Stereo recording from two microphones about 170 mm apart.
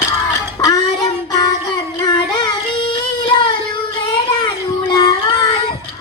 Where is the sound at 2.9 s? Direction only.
30° left (ahead or behind).